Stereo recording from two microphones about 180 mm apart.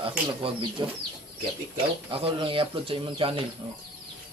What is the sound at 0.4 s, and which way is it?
Speech, 25° right (ahead or behind).